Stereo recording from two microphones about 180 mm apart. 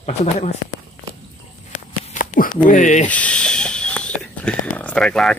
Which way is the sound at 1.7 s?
45° left (ahead or behind).